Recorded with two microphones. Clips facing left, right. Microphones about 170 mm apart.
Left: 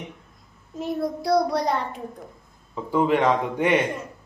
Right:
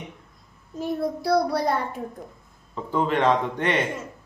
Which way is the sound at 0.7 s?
Centre (ahead or behind).